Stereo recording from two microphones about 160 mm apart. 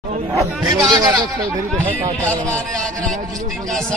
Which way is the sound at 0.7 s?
25° right (ahead or behind).